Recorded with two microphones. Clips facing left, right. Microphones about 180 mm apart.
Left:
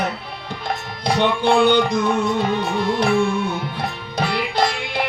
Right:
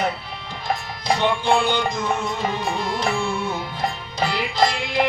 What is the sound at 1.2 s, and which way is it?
Music, 65° left (ahead or behind).